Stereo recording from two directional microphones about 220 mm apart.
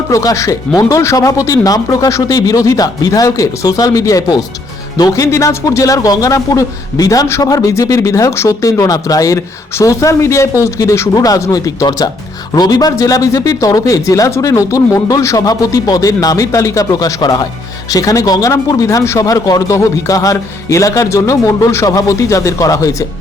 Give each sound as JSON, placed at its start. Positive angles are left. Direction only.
{"t": 0.1, "sound": "speech", "side_deg": 15}